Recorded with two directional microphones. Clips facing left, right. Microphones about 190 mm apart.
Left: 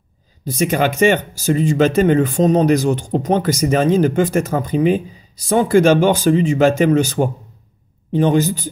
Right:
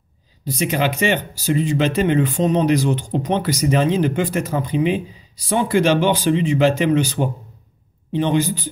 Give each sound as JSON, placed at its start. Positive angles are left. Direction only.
{"t": 0.5, "sound": "speech", "side_deg": 50}